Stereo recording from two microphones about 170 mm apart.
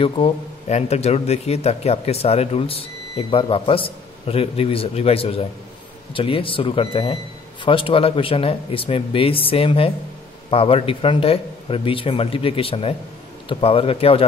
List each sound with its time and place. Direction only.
0.0 s a man's voice: 35° left (ahead or behind)